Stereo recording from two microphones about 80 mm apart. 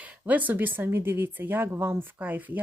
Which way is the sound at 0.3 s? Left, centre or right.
Right.